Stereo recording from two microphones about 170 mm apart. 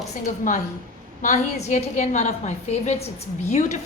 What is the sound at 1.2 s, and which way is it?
A woman's voice, 45° left (ahead or behind).